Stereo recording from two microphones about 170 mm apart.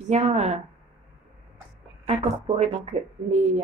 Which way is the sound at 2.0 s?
40° right (ahead or behind).